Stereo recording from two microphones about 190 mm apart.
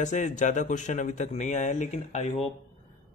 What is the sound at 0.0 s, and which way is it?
Speech, 40° left (ahead or behind).